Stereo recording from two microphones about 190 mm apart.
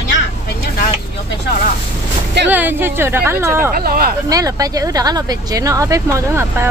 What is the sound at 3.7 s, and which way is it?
Speech, 50° right (ahead or behind).